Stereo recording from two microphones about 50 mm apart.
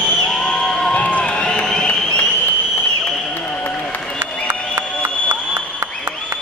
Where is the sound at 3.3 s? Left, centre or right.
Left.